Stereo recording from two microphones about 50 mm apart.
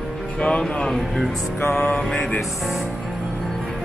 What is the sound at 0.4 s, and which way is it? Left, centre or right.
Speech, left.